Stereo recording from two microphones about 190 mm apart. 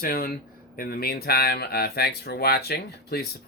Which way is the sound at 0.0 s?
50° left (ahead or behind).